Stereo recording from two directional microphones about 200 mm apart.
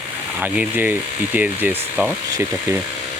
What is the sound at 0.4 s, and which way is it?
Speech, 5° right (ahead or behind).